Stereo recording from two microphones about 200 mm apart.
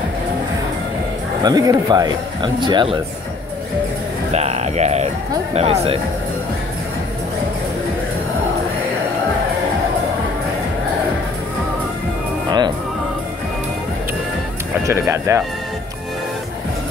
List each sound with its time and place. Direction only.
1.4 s speech: 20° right (ahead or behind)
4.3 s music: 35° right (ahead or behind)
5.5 s speech: 30° right (ahead or behind)
12.4 s music: 20° right (ahead or behind)
14.9 s speech: 15° right (ahead or behind)